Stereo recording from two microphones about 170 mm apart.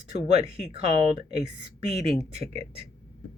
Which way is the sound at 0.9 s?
35° right (ahead or behind).